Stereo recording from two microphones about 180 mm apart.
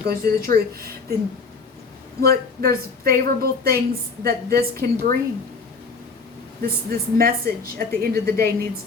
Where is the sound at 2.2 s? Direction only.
55° right (ahead or behind).